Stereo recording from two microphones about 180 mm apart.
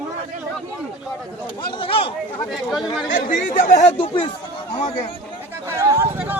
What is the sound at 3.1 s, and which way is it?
Speech, 50° left (ahead or behind).